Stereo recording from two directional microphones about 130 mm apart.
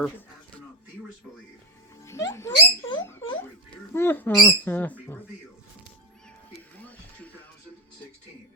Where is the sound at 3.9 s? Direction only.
15° left (ahead or behind).